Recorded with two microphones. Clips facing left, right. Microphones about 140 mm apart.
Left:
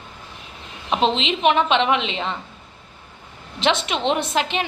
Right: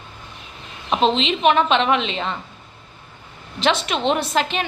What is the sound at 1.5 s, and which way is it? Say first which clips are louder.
Speech: even; 25° left (ahead or behind).